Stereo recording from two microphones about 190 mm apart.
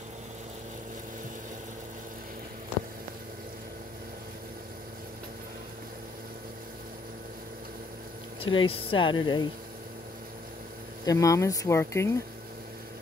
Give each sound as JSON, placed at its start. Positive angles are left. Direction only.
{"t": 8.4, "sound": "speech", "side_deg": 25}
{"t": 11.1, "sound": "speech", "side_deg": 15}